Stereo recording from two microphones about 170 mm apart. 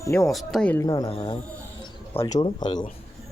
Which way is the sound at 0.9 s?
20° left (ahead or behind).